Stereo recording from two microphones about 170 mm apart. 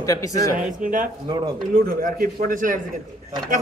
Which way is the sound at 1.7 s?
55° right (ahead or behind).